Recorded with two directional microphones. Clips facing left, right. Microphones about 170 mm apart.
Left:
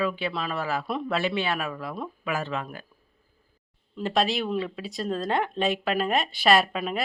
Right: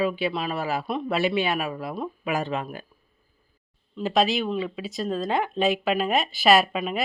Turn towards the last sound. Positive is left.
turn(degrees=-5)  # may be behind; listen again after turning